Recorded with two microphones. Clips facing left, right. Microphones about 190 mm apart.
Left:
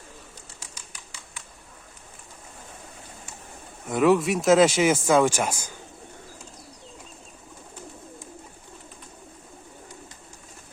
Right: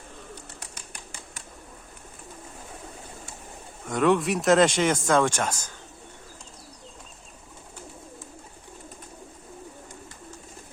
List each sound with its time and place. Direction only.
0.6 s typewriter: 55° right (ahead or behind)
3.8 s speech: 5° left (ahead or behind)